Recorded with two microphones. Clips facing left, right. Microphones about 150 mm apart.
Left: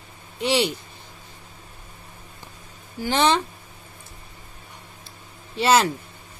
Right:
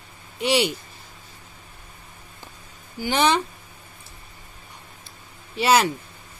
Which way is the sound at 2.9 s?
Centre (ahead or behind).